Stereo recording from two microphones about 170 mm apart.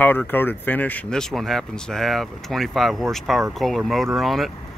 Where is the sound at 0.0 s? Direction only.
10° left (ahead or behind).